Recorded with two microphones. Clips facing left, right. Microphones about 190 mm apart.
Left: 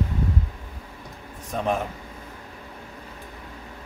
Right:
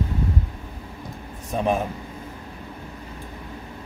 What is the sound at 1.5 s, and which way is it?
Speech, 10° right (ahead or behind).